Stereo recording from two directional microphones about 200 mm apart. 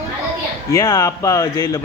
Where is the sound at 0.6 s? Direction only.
15° left (ahead or behind).